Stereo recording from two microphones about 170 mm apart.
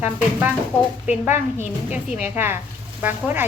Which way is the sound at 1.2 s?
45° left (ahead or behind).